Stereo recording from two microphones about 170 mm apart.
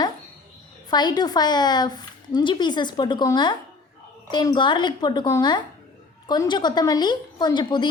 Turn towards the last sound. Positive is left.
turn(degrees=25)  # may be behind; listen again after turning